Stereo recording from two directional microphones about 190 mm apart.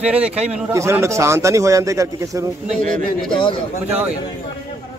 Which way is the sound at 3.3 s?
25° left (ahead or behind).